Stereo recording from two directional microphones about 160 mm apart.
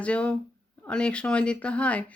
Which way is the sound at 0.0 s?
5° left (ahead or behind).